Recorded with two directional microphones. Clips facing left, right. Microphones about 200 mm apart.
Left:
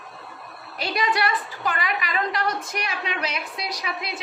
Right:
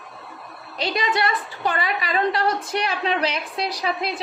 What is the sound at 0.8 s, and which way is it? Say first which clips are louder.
A woman's voice: right 1 dB; 25° right (ahead or behind).